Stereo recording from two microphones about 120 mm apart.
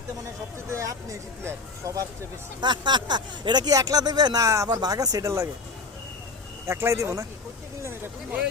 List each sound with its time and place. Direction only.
0.7 s speech: 25° right (ahead or behind)
2.6 s speech: 40° right (ahead or behind)
6.7 s speech: 20° right (ahead or behind)